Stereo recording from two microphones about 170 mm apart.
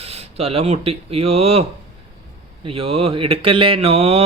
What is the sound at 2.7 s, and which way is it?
Speech, 35° right (ahead or behind).